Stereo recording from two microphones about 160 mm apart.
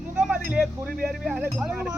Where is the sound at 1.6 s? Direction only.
10° right (ahead or behind).